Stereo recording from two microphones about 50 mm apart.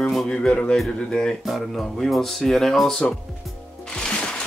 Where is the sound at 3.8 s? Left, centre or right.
Centre.